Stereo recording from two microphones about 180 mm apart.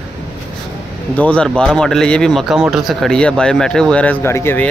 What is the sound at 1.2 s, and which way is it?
Speech, 5° left (ahead or behind).